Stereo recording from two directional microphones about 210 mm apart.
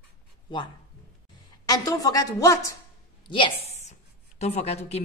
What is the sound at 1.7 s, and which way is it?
A woman's voice, 15° left (ahead or behind).